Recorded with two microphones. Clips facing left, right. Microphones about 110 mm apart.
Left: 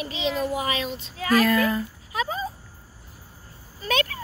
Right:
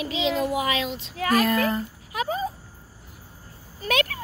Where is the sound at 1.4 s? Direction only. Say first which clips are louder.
Left 1 dB; 25° right (ahead or behind).